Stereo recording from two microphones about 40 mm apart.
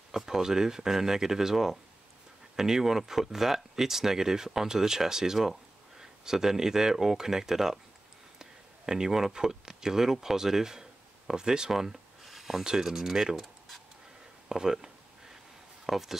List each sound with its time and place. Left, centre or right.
0.1 s speech: centre
14.5 s speech: centre